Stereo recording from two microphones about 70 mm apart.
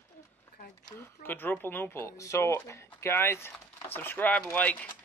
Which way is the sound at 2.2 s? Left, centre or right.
Left.